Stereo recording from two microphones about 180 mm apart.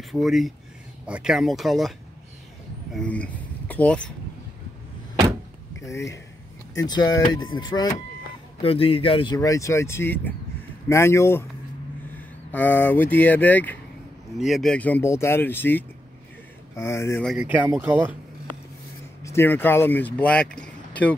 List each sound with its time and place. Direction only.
0.1 s speech: centre (ahead or behind)
5.8 s speech: 15° left (ahead or behind)
12.4 s speech: 10° left (ahead or behind)
17.2 s speech: centre (ahead or behind)
17.5 s speech: 10° right (ahead or behind)
19.2 s speech: 10° left (ahead or behind)